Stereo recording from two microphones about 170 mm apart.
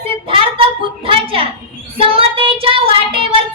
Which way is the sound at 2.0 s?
30° right (ahead or behind).